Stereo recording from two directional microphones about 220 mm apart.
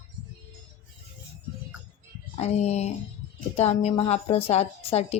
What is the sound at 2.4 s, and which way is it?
Speech, 30° left (ahead or behind).